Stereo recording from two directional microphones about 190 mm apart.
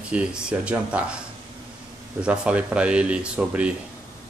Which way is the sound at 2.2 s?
5° right (ahead or behind).